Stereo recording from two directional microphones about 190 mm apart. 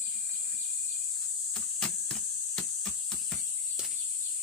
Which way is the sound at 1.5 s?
5° left (ahead or behind).